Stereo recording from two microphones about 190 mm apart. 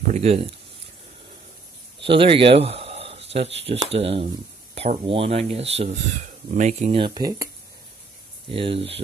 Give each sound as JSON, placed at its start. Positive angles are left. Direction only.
{"t": 0.1, "sound": "speech", "side_deg": -35}
{"t": 2.0, "sound": "speech", "side_deg": -30}
{"t": 7.0, "sound": "speech", "side_deg": -25}
{"t": 8.5, "sound": "speech", "side_deg": -30}